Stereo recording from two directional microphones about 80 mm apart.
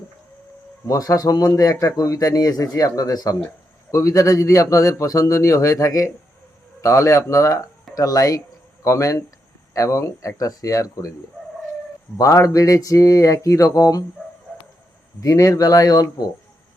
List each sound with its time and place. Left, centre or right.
0.9 s a man's voice: left
12.1 s a man's voice: left
15.2 s a man's voice: left